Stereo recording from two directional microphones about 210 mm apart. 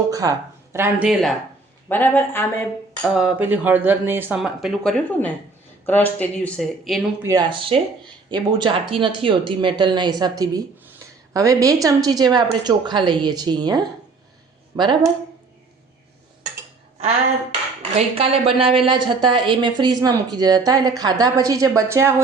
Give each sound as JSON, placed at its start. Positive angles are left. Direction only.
{"t": 0.1, "sound": "speech", "side_deg": -15}
{"t": 1.9, "sound": "speech", "side_deg": 10}
{"t": 3.2, "sound": "speech", "side_deg": -5}
{"t": 7.3, "sound": "a woman's voice", "side_deg": -20}
{"t": 17.9, "sound": "a woman's voice", "side_deg": -30}